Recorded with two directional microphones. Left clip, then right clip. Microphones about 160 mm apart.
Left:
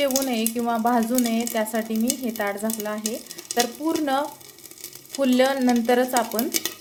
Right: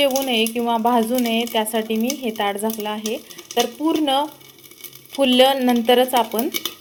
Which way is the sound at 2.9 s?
5° left (ahead or behind).